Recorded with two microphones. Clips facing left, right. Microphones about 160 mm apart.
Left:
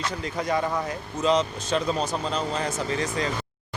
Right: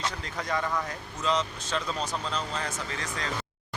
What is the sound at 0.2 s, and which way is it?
Speech, 10° left (ahead or behind).